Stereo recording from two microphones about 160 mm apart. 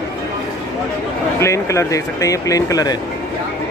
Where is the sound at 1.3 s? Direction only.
20° left (ahead or behind).